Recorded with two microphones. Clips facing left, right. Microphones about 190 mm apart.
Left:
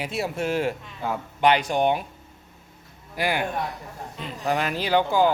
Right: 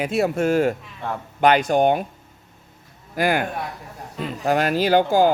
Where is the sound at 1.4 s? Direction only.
45° right (ahead or behind).